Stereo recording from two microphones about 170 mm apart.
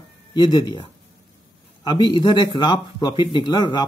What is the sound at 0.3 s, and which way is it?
Speech, 25° left (ahead or behind).